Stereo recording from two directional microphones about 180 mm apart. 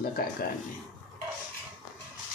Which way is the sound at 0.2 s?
55° left (ahead or behind).